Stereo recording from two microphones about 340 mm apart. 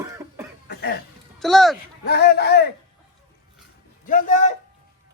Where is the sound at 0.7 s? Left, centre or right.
Left.